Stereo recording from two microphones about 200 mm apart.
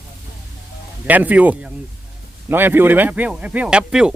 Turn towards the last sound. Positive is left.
turn(degrees=-5)  # may be behind; listen again after turning